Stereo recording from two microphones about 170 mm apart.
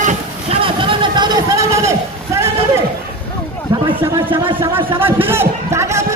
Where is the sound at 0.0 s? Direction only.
35° right (ahead or behind); by 2.5 s 15° right (ahead or behind).